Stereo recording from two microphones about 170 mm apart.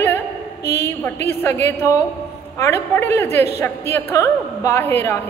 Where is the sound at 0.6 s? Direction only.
70° left (ahead or behind).